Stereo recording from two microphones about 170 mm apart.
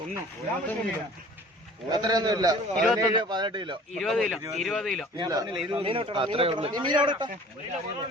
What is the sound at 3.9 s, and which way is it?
Speech, centre (ahead or behind).